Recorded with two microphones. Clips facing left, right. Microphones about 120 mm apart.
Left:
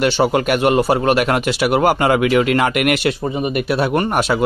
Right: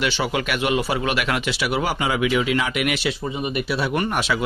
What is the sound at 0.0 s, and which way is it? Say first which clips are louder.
Speech: left 8 dB; 45° left (ahead or behind).